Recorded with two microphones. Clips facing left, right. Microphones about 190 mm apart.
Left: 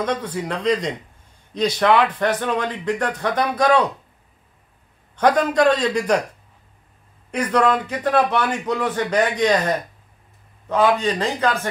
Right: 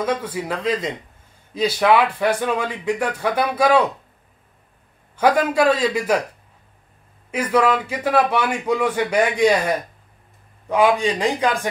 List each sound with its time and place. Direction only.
0.0 s speech: 5° right (ahead or behind)
5.1 s speech: 5° right (ahead or behind)
7.2 s speech: 5° right (ahead or behind)